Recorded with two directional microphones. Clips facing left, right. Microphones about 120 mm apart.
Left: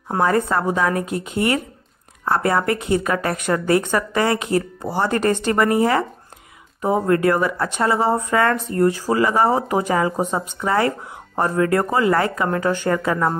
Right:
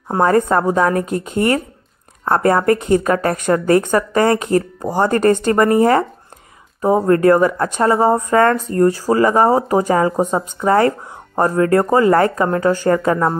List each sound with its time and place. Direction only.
0.1 s a woman's voice: 40° right (ahead or behind)
7.1 s speech: 40° right (ahead or behind)